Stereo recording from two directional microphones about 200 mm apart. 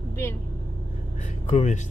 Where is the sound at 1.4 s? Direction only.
35° left (ahead or behind).